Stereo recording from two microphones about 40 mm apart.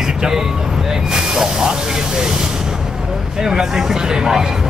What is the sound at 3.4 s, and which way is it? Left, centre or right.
Speech, centre.